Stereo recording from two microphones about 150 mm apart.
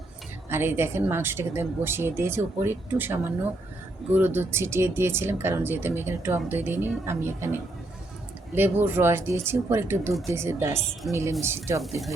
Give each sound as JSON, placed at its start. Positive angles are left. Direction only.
{"t": 0.5, "sound": "speech", "side_deg": -15}
{"t": 8.5, "sound": "speech", "side_deg": -15}
{"t": 11.8, "sound": "speech", "side_deg": 0}